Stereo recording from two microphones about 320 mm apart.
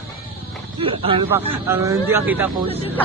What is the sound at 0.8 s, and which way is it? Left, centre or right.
A man's voice, centre.